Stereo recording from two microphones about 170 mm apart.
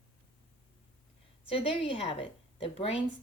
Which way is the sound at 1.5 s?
30° left (ahead or behind).